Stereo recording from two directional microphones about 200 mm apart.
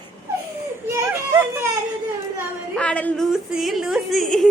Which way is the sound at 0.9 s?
10° right (ahead or behind).